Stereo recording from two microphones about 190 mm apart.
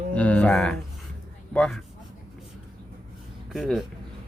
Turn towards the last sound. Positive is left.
turn(degrees=0)  # may be behind; listen again after turning